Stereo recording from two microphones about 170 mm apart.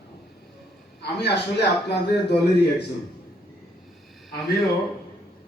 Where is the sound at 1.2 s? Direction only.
80° left.